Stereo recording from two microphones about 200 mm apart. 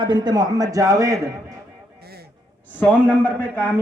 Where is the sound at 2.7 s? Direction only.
10° left (ahead or behind).